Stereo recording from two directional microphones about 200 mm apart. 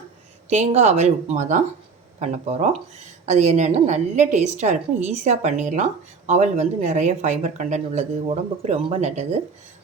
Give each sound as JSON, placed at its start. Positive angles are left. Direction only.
{"t": 0.5, "sound": "a woman's voice", "side_deg": -35}